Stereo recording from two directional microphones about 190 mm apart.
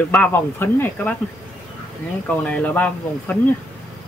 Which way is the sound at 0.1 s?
10° left (ahead or behind).